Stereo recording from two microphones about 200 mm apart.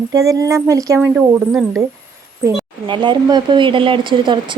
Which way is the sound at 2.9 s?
20° right (ahead or behind).